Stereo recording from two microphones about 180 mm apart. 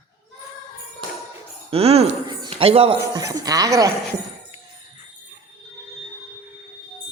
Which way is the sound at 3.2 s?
20° right (ahead or behind).